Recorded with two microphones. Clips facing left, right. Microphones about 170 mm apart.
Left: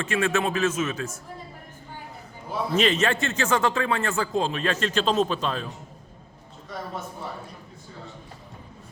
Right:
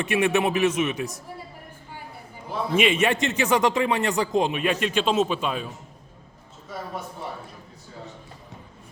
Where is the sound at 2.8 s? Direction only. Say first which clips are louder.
Right 2 dB; 10° right (ahead or behind).